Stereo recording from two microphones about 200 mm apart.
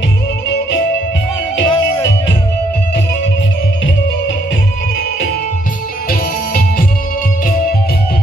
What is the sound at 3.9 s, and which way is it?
Music, 65° left (ahead or behind).